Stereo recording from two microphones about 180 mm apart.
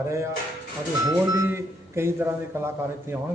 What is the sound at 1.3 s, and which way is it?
Speech, 15° right (ahead or behind).